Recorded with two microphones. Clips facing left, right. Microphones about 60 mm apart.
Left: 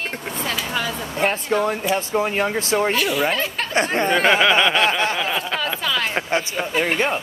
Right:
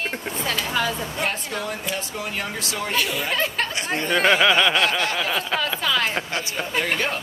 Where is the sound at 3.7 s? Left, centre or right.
Left.